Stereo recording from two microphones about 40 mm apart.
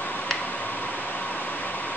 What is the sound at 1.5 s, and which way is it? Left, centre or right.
Vehicle, left.